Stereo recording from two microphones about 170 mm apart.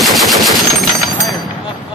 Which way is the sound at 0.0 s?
Centre (ahead or behind).